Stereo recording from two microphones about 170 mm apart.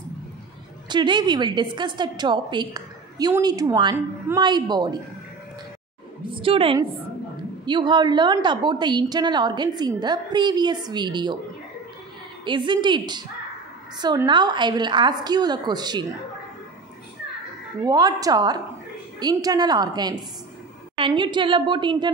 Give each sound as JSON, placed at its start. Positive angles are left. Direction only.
{"t": 0.8, "sound": "a woman's voice", "side_deg": -25}
{"t": 6.3, "sound": "a woman's voice", "side_deg": -30}
{"t": 12.4, "sound": "a woman's voice", "side_deg": -25}
{"t": 17.8, "sound": "a woman's voice", "side_deg": -25}